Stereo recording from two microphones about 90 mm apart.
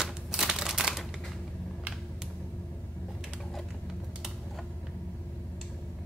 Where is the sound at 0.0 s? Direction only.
5° right (ahead or behind).